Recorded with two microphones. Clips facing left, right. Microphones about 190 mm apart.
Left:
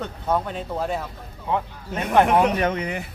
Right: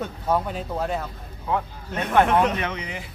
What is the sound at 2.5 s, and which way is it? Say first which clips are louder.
Speech: left 6 dB; 45° left (ahead or behind).